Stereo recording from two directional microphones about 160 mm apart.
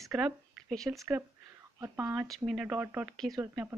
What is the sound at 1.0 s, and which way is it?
Speech, 15° right (ahead or behind).